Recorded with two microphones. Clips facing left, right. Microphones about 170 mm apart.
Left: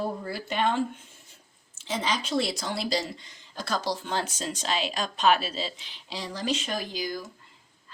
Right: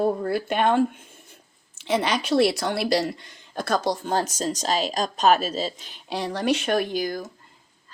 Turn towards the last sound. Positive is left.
turn(degrees=-55)  # may be behind; listen again after turning